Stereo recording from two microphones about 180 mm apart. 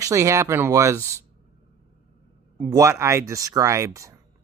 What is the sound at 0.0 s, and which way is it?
Speech, 15° right (ahead or behind).